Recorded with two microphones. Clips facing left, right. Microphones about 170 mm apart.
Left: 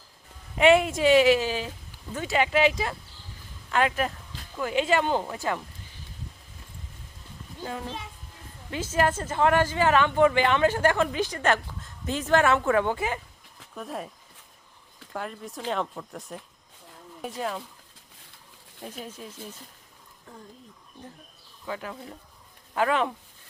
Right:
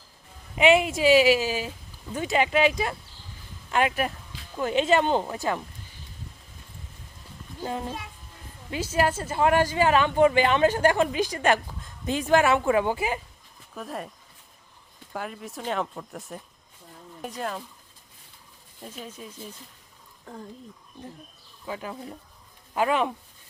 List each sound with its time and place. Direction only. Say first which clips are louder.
0.5 s a woman's voice: left 1 dB; 5° right (ahead or behind)
2.1 s speech: right 1 dB; 20° right (ahead or behind)
3.7 s a sound: even; 15° right (ahead or behind)
4.6 s speech: right 2 dB; 25° right (ahead or behind)
8.7 s a woman's voice: even; 10° right (ahead or behind)
13.7 s speech: even; centre (ahead or behind)
15.1 s speech: even; 5° right (ahead or behind)
18.8 s speech: left 1 dB; 10° left (ahead or behind)
21.7 s a woman's voice: right 1 dB; 20° right (ahead or behind)